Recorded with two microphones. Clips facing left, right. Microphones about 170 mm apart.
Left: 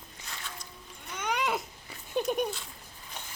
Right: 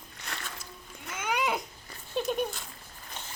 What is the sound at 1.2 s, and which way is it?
Babbling, centre (ahead or behind).